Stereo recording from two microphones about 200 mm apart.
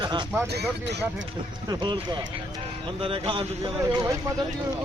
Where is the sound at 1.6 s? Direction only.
20° right (ahead or behind).